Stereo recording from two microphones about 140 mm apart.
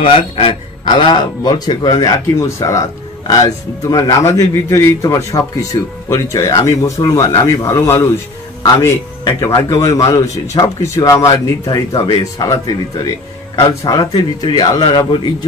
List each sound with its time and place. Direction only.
0.0 s a man's voice: 40° left (ahead or behind)